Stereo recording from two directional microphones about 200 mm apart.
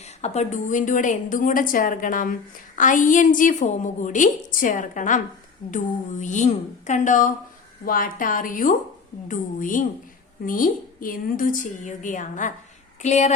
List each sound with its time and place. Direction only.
0.2 s a woman's voice: 35° left (ahead or behind)